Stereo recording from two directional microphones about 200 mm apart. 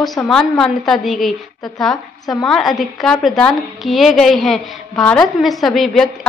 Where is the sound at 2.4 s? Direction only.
Centre (ahead or behind).